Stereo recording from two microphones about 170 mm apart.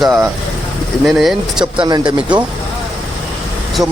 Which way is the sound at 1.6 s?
25° right (ahead or behind).